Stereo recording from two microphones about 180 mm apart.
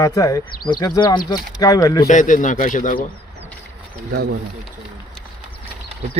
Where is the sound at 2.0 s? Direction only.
45° left (ahead or behind).